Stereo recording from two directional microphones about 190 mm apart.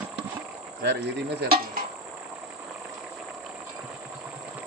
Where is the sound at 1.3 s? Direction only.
55° right (ahead or behind).